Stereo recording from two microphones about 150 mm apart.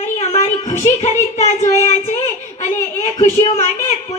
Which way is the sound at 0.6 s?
50° left (ahead or behind).